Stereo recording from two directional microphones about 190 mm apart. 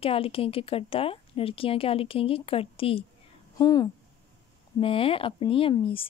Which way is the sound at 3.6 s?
20° left (ahead or behind).